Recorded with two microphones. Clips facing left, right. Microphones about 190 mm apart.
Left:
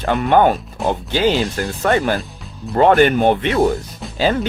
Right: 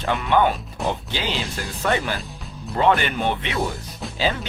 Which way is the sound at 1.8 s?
50° left (ahead or behind).